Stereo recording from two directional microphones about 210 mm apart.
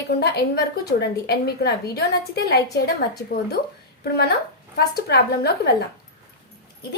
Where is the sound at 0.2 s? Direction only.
50° left (ahead or behind).